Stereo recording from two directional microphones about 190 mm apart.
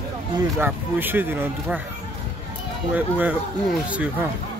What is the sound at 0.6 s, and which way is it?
Speech, 10° right (ahead or behind).